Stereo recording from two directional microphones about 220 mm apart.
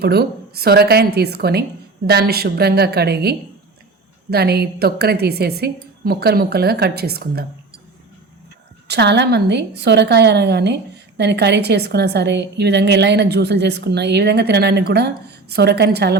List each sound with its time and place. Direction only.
0.0 s a woman's voice: 45° right (ahead or behind)
8.9 s a woman's voice: 50° right (ahead or behind)